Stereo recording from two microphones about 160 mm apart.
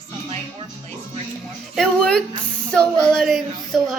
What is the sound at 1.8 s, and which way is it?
Speech, 5° left (ahead or behind).